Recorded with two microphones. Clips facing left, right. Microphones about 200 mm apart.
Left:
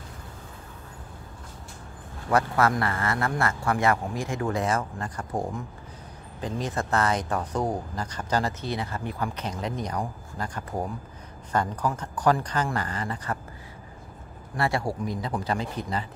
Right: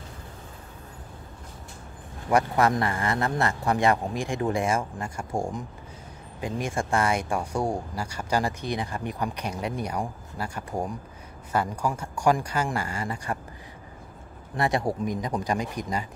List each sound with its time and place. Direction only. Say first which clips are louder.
2.2 s speech: right 1 dB; 15° right (ahead or behind)
14.6 s speech: right 2 dB; 20° right (ahead or behind)